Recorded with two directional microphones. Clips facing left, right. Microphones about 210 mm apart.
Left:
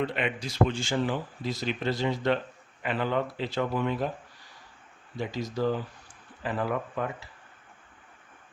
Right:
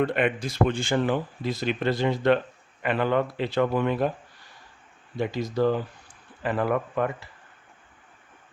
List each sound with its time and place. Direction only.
0.0 s speech: 55° right (ahead or behind)
5.1 s speech: 55° right (ahead or behind)